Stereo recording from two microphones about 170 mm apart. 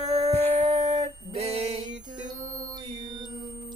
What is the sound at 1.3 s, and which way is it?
Music, 40° right (ahead or behind).